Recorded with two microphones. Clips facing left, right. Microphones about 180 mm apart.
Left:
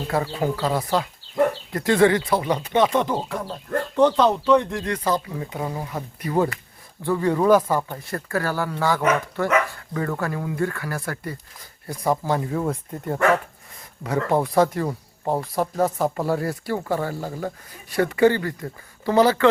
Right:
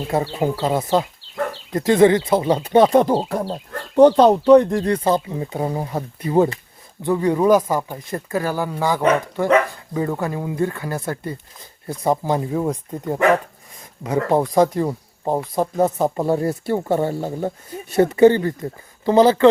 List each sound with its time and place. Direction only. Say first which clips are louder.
0.1 s speech: right 3 dB; 20° right (ahead or behind)